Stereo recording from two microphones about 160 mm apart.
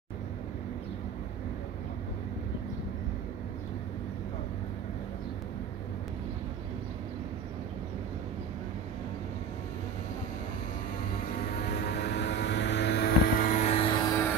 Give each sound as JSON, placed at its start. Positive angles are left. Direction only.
{"t": 11.7, "sound": "vehicle", "side_deg": 85}
{"t": 13.4, "sound": "vehicle", "side_deg": 45}